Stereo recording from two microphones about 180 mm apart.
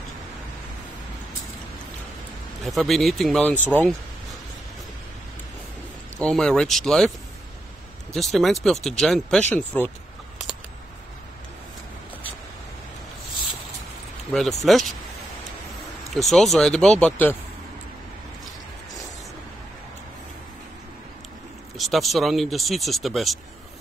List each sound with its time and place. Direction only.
2.6 s speech: centre (ahead or behind)
6.1 s speech: 5° left (ahead or behind)
8.1 s speech: centre (ahead or behind)
14.6 s speech: centre (ahead or behind)
16.1 s speech: centre (ahead or behind)
21.7 s speech: centre (ahead or behind)